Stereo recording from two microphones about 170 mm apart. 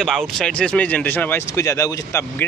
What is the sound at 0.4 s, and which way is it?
Speech, 5° left (ahead or behind).